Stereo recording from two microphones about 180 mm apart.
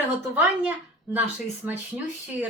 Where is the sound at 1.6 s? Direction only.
10° right (ahead or behind).